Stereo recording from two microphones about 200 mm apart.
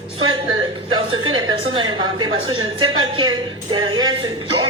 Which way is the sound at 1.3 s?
25° right (ahead or behind).